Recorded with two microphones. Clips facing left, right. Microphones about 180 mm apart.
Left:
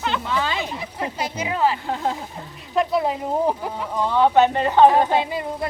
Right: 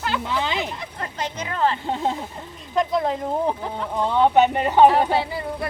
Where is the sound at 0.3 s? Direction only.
20° right (ahead or behind).